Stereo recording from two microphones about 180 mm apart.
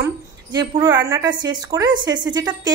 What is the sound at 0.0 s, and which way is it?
A woman's voice, 20° right (ahead or behind).